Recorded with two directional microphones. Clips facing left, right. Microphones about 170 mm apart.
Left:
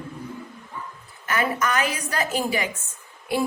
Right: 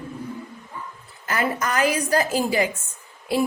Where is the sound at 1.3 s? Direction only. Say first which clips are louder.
Even; 30° right (ahead or behind).